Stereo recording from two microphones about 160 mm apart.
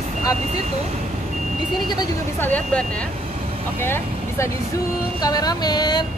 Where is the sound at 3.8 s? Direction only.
15° left (ahead or behind).